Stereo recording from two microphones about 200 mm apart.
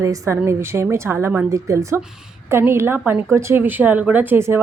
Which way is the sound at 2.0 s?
5° right (ahead or behind).